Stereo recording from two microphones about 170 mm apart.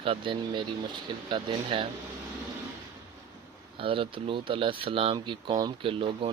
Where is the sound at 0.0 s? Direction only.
30° right (ahead or behind).